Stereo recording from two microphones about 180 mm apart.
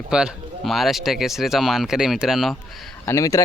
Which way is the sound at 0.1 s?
5° right (ahead or behind).